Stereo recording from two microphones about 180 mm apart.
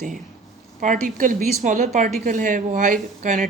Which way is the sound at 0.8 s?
45° right (ahead or behind).